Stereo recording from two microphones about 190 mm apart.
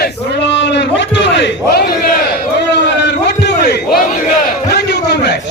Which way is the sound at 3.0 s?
65° left (ahead or behind).